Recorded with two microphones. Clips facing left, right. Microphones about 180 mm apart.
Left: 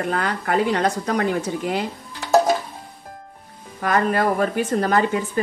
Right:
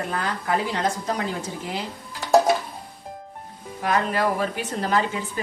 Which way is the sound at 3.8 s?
50° left (ahead or behind).